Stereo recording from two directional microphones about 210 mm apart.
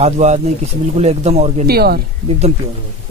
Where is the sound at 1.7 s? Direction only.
45° right (ahead or behind).